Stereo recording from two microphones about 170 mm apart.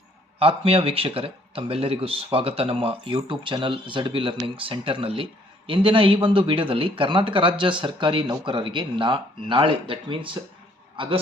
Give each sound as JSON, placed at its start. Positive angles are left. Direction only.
{"t": 0.3, "sound": "a man's voice", "side_deg": -35}